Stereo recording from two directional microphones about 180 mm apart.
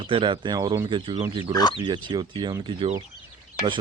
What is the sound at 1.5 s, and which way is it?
Speech, 20° left (ahead or behind).